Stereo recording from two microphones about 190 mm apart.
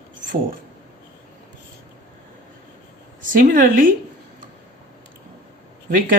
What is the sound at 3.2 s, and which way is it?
Speech, 45° right (ahead or behind).